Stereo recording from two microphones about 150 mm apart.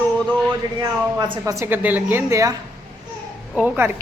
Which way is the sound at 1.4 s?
20° right (ahead or behind).